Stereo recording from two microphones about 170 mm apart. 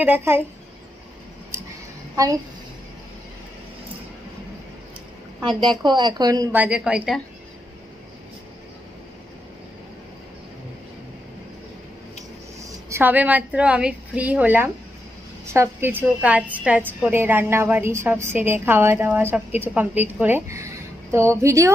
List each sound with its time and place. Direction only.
0.0 s a woman's voice: 10° right (ahead or behind)
1.5 s a sound: 15° right (ahead or behind)
5.6 s a woman's voice: 25° right (ahead or behind)
6.5 s a woman's voice: 10° right (ahead or behind)
12.9 s a woman's voice: 10° right (ahead or behind)